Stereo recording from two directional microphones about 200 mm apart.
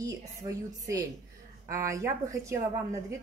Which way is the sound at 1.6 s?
15° right (ahead or behind).